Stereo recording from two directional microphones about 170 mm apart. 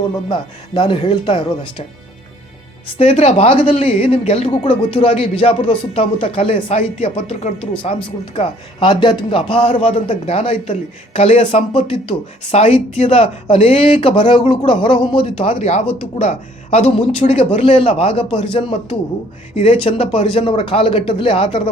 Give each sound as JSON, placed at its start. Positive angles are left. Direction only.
{"t": 0.3, "sound": "speech", "side_deg": 30}
{"t": 3.0, "sound": "a man's voice", "side_deg": 35}